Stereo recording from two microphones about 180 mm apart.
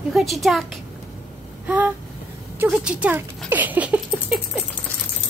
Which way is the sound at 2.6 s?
5° right (ahead or behind).